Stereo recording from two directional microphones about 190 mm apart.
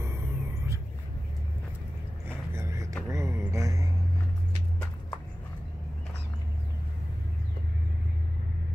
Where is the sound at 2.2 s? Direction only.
15° right (ahead or behind).